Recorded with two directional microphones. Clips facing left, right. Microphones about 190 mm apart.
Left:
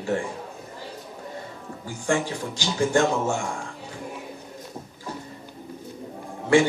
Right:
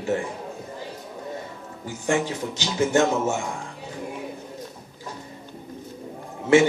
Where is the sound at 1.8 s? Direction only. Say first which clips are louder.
Right 1 dB; 20° right (ahead or behind).